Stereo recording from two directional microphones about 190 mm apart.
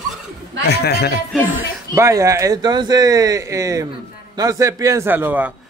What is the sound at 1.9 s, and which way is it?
Speech, 15° right (ahead or behind).